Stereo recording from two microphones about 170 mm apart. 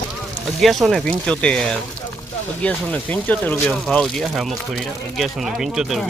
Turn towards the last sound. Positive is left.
turn(degrees=0)  # may be behind; listen again after turning